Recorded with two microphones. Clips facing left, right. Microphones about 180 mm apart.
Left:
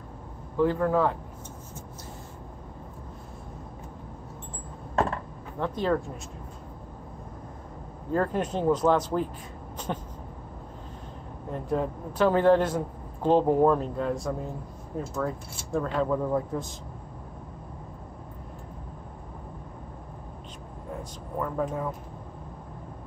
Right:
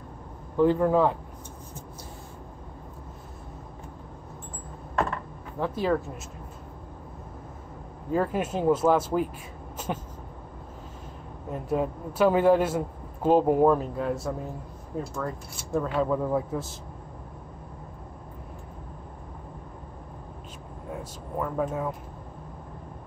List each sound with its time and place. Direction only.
0.6 s a man's voice: 15° right (ahead or behind)
5.6 s speech: 5° right (ahead or behind)
8.1 s a man's voice: 5° right (ahead or behind)
9.8 s a sound: 5° right (ahead or behind)
11.5 s a man's voice: 10° right (ahead or behind)
21.4 s speech: 5° right (ahead or behind)